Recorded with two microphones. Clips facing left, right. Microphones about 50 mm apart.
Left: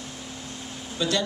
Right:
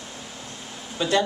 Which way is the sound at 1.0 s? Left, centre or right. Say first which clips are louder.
Right 4 dB; right.